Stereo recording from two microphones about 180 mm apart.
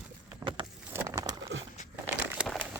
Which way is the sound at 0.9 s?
20° right (ahead or behind).